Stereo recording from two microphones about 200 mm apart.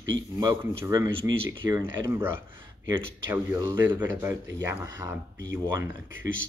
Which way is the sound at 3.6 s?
20° right (ahead or behind).